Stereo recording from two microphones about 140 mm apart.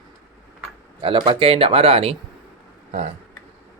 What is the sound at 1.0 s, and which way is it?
Speech, 35° right (ahead or behind).